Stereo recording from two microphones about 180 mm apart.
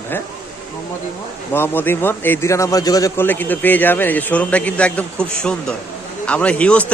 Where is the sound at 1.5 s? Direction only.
10° left (ahead or behind).